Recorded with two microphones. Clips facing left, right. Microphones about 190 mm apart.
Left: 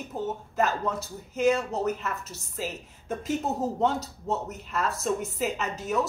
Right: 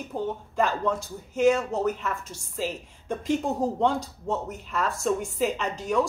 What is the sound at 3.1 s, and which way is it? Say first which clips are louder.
Speech: right 3 dB; 5° left (ahead or behind).